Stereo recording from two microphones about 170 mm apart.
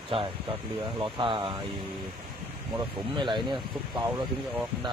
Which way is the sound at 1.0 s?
30° right (ahead or behind).